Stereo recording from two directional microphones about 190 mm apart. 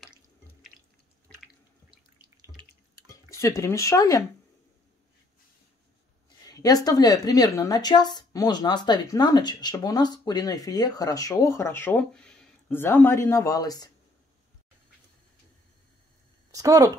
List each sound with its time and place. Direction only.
0.0 s drip: centre (ahead or behind)
2.6 s water: 25° right (ahead or behind)
3.1 s speech: 15° left (ahead or behind)
6.2 s speech: 20° left (ahead or behind)
16.5 s speech: 20° right (ahead or behind)